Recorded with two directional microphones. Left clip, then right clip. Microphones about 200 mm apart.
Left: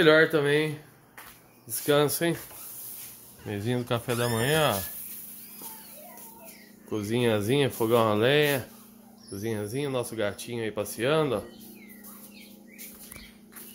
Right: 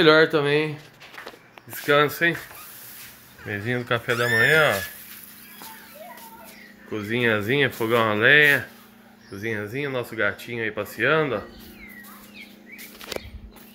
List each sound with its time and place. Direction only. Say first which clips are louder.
0.0 s speech: right 4 dB; centre (ahead or behind)
1.9 s speech: right 5 dB; 20° left (ahead or behind)
3.4 s speech: right 5 dB; 15° left (ahead or behind)
6.9 s speech: right 4 dB; 20° left (ahead or behind)